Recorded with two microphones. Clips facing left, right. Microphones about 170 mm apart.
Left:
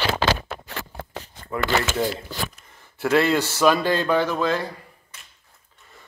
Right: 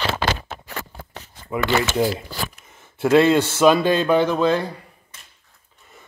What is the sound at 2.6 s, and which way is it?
Speech, 25° right (ahead or behind).